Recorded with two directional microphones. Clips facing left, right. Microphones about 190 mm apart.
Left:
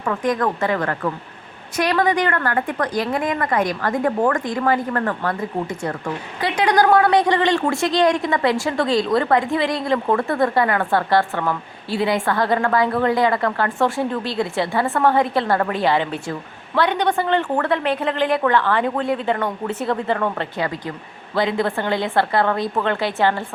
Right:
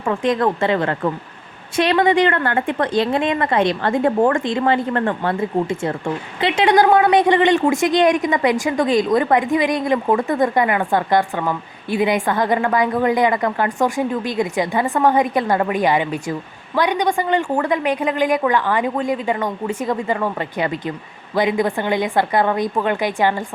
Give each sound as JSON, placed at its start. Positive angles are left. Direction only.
{"t": 0.0, "sound": "a woman's voice", "side_deg": -25}
{"t": 20.6, "sound": "a woman's voice", "side_deg": -20}